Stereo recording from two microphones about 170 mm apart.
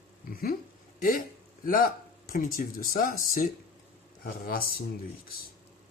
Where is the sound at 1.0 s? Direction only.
55° left (ahead or behind).